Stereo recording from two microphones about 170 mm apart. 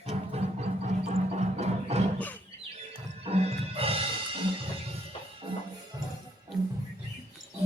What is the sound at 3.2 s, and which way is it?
Music, 35° right (ahead or behind).